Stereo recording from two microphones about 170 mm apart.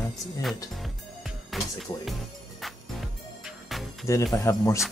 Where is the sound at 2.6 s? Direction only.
Centre (ahead or behind).